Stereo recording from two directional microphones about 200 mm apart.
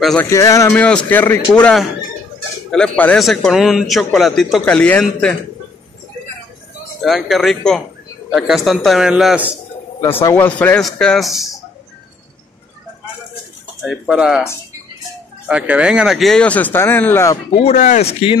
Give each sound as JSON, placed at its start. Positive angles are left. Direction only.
{"t": 0.0, "sound": "speech", "side_deg": 5}
{"t": 0.3, "sound": "speech", "side_deg": 15}
{"t": 7.0, "sound": "speech", "side_deg": 0}
{"t": 9.9, "sound": "speech", "side_deg": 15}
{"t": 13.8, "sound": "speech", "side_deg": -5}
{"t": 15.4, "sound": "speech", "side_deg": -5}
{"t": 17.6, "sound": "speech", "side_deg": 35}